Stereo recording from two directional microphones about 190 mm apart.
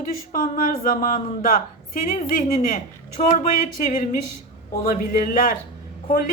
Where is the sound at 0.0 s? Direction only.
45° left (ahead or behind).